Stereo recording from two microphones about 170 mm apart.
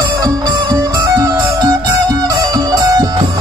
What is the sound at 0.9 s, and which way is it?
Music, 20° right (ahead or behind).